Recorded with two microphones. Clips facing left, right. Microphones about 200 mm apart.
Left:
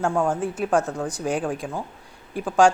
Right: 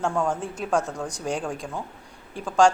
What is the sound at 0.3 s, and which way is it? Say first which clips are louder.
A woman's voice: left 3 dB; 5° left (ahead or behind).